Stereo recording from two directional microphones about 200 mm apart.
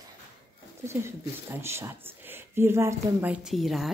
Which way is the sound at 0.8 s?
15° right (ahead or behind).